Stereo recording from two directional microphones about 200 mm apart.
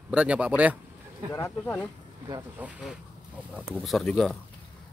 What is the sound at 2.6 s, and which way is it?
Speech, centre (ahead or behind).